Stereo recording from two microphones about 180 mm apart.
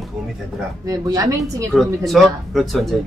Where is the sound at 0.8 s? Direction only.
20° right (ahead or behind).